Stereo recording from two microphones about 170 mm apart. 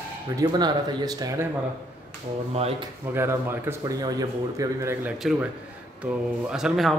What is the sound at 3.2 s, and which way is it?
A man's voice, 15° right (ahead or behind).